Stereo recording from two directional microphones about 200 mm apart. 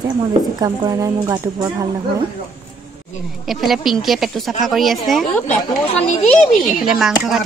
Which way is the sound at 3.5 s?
Centre (ahead or behind).